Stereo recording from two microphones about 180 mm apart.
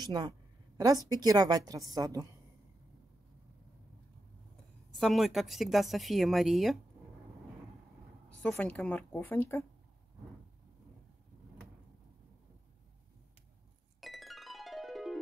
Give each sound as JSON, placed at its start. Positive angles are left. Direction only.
{"t": 0.0, "sound": "a woman's voice", "side_deg": -25}
{"t": 4.9, "sound": "a woman's voice", "side_deg": 0}
{"t": 8.4, "sound": "a woman's voice", "side_deg": 5}
{"t": 14.0, "sound": "music", "side_deg": 0}